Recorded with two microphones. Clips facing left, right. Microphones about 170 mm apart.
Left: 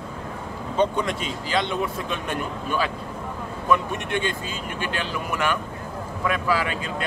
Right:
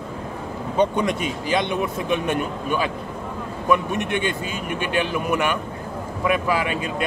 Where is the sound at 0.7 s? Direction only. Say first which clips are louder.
Right 3 dB; 15° right (ahead or behind).